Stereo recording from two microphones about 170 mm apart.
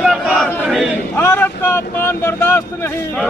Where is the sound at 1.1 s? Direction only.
15° left (ahead or behind).